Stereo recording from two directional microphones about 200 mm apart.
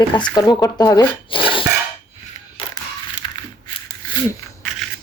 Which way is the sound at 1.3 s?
25° left (ahead or behind).